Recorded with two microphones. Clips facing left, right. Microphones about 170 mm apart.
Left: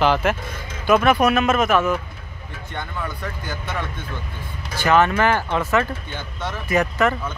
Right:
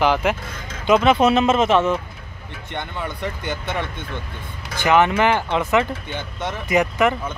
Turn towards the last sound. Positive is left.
turn(degrees=-15)  # may be behind; listen again after turning